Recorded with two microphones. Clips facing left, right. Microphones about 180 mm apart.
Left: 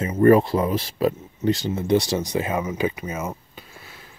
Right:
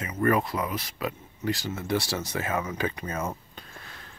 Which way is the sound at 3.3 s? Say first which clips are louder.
Left 3 dB; 5° left (ahead or behind).